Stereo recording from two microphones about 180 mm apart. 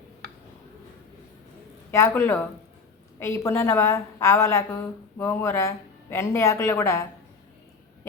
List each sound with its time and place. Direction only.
1.9 s a woman's voice: 15° left (ahead or behind)